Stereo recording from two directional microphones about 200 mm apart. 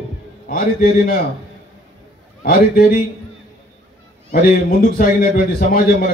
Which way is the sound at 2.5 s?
50° left (ahead or behind).